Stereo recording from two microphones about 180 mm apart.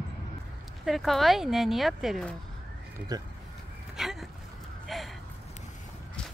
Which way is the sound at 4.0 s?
Centre (ahead or behind).